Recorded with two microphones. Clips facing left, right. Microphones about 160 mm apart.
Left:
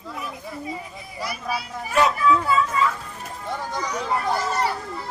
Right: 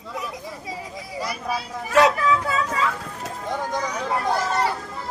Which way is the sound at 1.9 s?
80° right.